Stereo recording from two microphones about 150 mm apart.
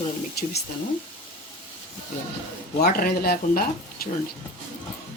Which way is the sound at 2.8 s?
80° left.